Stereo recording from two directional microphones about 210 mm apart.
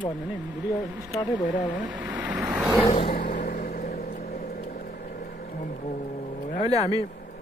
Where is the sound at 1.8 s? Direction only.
5° right (ahead or behind).